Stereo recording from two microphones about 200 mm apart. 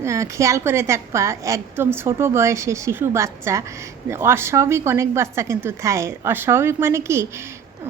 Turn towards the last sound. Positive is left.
turn(degrees=-15)  # may be behind; listen again after turning